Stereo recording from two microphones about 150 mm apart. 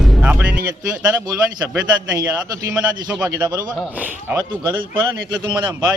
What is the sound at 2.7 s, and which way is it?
Speech, 10° right (ahead or behind).